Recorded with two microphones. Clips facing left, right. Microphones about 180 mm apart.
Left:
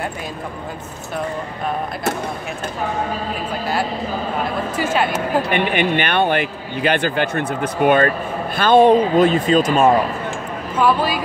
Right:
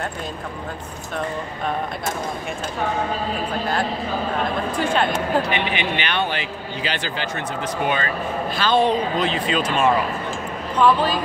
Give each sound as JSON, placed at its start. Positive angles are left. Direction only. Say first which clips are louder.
{"t": 4.7, "sound": "a woman's voice", "louder": "left 2 dB", "side_deg": 5}
{"t": 5.5, "sound": "a man's voice", "louder": "left 5 dB", "side_deg": 50}
{"t": 10.8, "sound": "a woman's voice", "louder": "even", "side_deg": 10}